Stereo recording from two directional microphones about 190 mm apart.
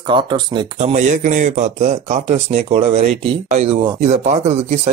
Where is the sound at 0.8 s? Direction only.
35° right (ahead or behind).